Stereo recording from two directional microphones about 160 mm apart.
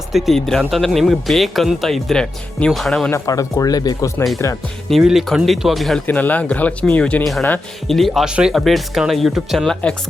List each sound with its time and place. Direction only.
0.1 s speech: centre (ahead or behind)
3.1 s speech: 20° left (ahead or behind)
4.9 s speech: centre (ahead or behind)